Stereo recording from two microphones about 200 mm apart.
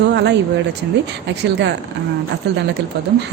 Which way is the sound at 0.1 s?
60° right (ahead or behind).